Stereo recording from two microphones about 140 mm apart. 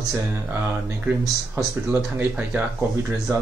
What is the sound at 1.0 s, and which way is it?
Speech, 15° right (ahead or behind).